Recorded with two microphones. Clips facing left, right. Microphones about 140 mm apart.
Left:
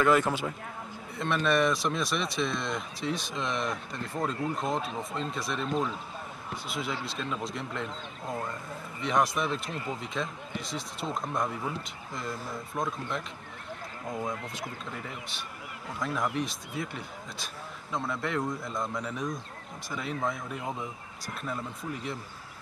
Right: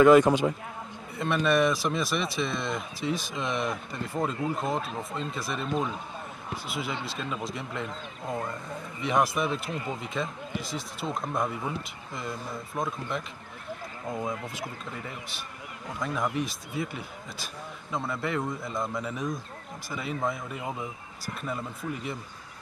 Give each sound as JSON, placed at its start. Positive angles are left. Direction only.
{"t": 0.0, "sound": "a man's voice", "side_deg": -20}
{"t": 1.1, "sound": "speech", "side_deg": 0}